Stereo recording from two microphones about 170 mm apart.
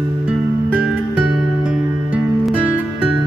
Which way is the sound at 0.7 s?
10° right (ahead or behind).